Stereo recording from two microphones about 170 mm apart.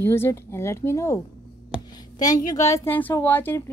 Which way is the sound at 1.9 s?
20° left (ahead or behind).